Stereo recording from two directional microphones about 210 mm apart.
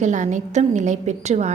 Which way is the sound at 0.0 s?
35° right (ahead or behind).